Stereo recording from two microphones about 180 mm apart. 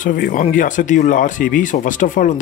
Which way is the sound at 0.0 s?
50° left (ahead or behind).